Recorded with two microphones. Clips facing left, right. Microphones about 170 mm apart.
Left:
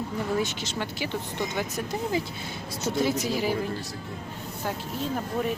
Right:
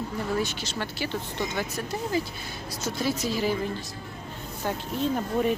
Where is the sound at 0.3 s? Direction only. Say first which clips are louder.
Left 1 dB; 20° left (ahead or behind).